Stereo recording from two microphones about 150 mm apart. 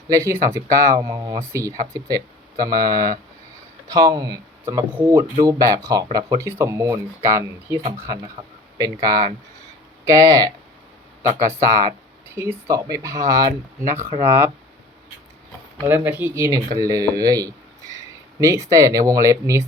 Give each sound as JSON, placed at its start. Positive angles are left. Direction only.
{"t": 0.1, "sound": "speech", "side_deg": -20}
{"t": 4.6, "sound": "speech", "side_deg": -15}
{"t": 15.9, "sound": "speech", "side_deg": -15}